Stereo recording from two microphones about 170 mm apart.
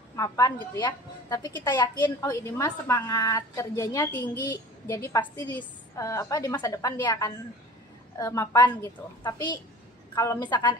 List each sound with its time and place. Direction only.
0.1 s a woman's voice: 20° left (ahead or behind)